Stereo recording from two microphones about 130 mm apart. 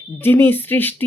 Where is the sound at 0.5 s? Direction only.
15° left (ahead or behind).